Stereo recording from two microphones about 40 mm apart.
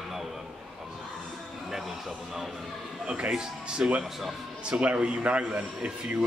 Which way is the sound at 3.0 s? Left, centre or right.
Right.